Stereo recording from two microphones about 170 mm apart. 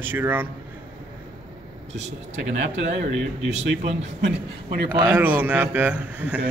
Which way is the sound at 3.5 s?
40° right (ahead or behind).